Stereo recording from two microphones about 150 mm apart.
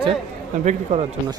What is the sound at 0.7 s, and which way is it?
Speech, 50° right (ahead or behind).